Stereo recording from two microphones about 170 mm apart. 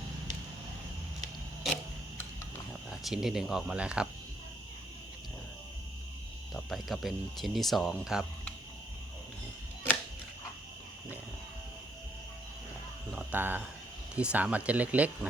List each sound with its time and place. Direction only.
2.9 s speech: 5° right (ahead or behind)
6.5 s speech: centre (ahead or behind)
13.1 s a sound: 10° right (ahead or behind)
14.2 s speech: 5° right (ahead or behind)